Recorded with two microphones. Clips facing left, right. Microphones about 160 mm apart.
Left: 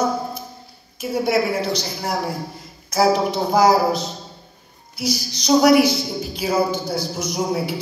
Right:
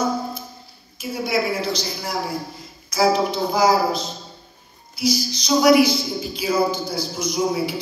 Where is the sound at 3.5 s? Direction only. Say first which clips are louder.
Left 3 dB; 65° left (ahead or behind).